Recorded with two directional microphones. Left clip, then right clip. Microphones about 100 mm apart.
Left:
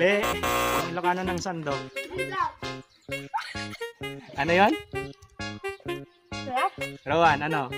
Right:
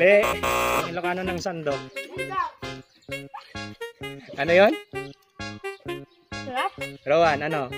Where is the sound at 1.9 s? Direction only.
Centre (ahead or behind).